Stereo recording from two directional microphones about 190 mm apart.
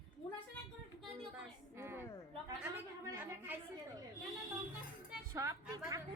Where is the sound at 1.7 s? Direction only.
10° right (ahead or behind).